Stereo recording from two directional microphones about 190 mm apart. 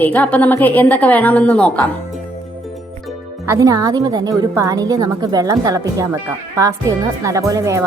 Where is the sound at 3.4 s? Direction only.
15° right (ahead or behind).